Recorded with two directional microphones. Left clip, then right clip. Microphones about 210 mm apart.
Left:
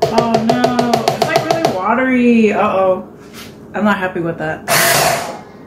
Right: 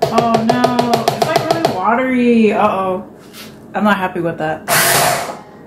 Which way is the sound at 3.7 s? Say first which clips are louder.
Right 1 dB; 15° right (ahead or behind).